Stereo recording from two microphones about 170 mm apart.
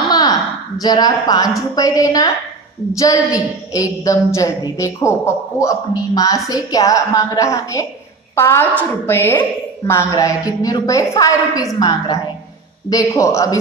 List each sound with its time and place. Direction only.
0.1 s a woman's voice: 20° left (ahead or behind)